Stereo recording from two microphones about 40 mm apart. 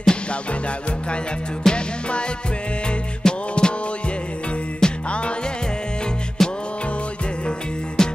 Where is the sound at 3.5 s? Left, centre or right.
Left.